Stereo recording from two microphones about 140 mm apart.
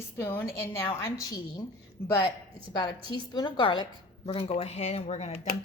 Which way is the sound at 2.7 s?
30° left (ahead or behind).